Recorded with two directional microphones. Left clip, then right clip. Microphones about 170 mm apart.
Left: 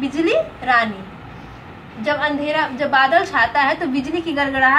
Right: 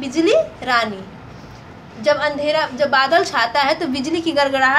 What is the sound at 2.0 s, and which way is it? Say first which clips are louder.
A woman's voice: right 3 dB; 35° right (ahead or behind).